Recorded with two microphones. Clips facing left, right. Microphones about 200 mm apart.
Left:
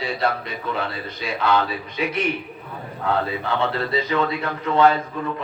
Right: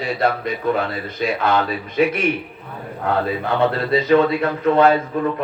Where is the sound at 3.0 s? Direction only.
50° right (ahead or behind).